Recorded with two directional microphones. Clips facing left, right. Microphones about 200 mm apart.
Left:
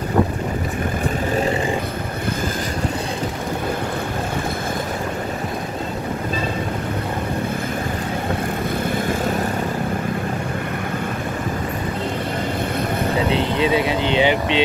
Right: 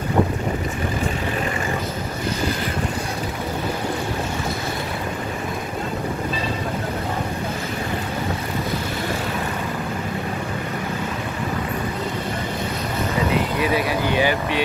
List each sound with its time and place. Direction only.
13.3 s vehicle: 25° left (ahead or behind)